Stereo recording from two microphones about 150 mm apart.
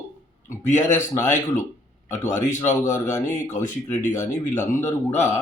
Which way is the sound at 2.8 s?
20° left (ahead or behind).